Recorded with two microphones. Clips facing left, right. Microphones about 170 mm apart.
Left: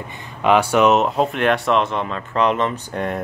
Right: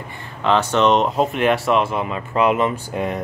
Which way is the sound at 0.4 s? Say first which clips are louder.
Left 2 dB; 10° left (ahead or behind).